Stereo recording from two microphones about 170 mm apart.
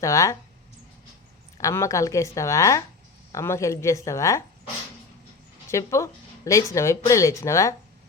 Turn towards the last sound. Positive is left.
turn(degrees=20)  # may be behind; listen again after turning